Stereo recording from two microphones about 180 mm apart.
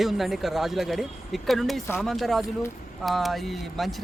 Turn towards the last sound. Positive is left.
turn(degrees=0)  # may be behind; listen again after turning